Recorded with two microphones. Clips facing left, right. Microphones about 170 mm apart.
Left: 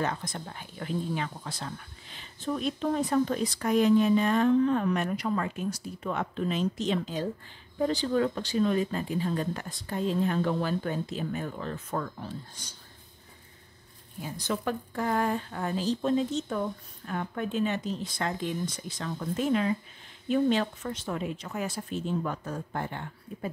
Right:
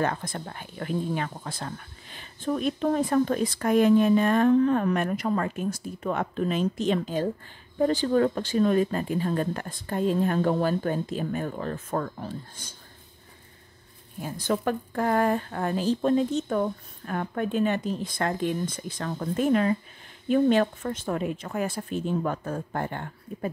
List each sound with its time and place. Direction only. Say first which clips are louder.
0.0 s speech: right 4 dB; 55° right (ahead or behind)
14.2 s speech: right 5 dB; 50° right (ahead or behind)